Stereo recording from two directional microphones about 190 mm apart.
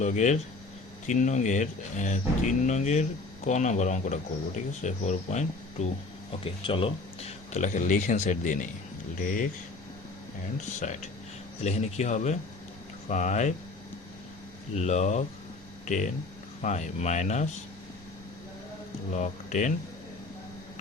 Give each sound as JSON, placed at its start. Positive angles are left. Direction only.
{"t": 0.0, "sound": "speech", "side_deg": 40}
{"t": 10.8, "sound": "speech", "side_deg": 40}
{"t": 14.8, "sound": "speech", "side_deg": 35}
{"t": 16.6, "sound": "speech", "side_deg": 40}
{"t": 19.1, "sound": "speech", "side_deg": 40}